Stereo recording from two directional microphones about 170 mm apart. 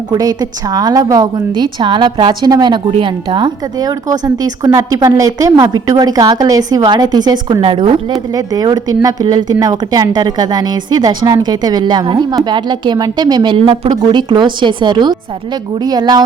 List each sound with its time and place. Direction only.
0.1 s a woman's voice: 20° right (ahead or behind)